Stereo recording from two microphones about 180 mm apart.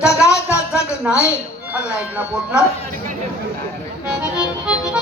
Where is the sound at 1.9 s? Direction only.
5° right (ahead or behind).